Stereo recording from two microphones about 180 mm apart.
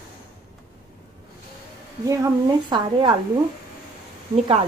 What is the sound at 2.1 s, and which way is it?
A woman's voice, 20° right (ahead or behind).